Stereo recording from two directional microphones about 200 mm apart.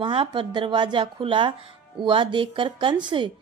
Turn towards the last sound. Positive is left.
turn(degrees=-25)  # may be behind; listen again after turning